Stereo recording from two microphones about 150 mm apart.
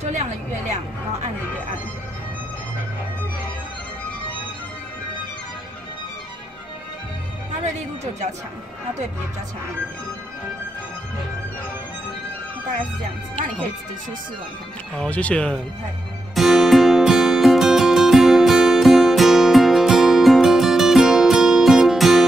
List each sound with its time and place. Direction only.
8.0 s speech: 50° right (ahead or behind)
15.0 s speech: 10° left (ahead or behind)
16.3 s music: centre (ahead or behind)